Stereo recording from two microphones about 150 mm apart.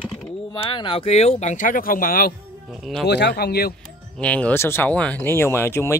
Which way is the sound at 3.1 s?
90° left.